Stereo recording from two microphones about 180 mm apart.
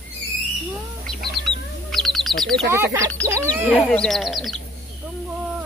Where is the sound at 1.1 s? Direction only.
Centre (ahead or behind).